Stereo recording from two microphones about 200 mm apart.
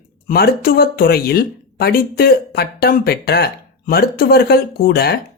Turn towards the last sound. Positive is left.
turn(degrees=50)  # may be behind; listen again after turning